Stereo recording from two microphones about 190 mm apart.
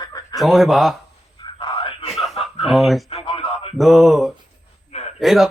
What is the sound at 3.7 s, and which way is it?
Speech, centre (ahead or behind).